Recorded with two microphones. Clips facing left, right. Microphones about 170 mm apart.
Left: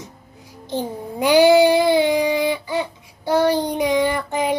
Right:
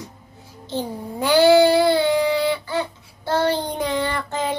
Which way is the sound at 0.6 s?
15° left (ahead or behind).